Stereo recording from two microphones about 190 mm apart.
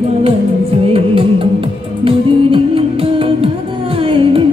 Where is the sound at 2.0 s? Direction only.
30° right (ahead or behind).